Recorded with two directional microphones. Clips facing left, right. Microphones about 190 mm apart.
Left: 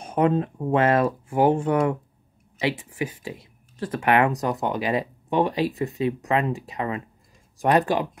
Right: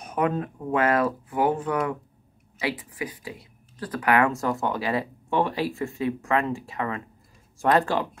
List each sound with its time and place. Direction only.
0.0 s speech: 30° left (ahead or behind)